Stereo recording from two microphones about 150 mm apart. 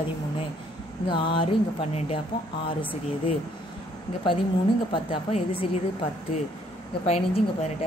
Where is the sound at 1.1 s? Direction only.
35° left (ahead or behind).